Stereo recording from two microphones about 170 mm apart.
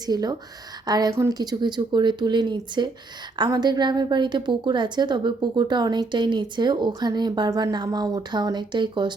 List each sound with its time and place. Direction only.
0.0 s a woman's voice: 25° right (ahead or behind)